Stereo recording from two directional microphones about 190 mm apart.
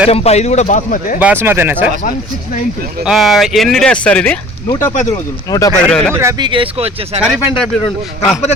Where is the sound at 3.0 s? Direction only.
Centre (ahead or behind).